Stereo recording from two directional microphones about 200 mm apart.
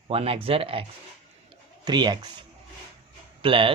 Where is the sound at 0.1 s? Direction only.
30° right (ahead or behind).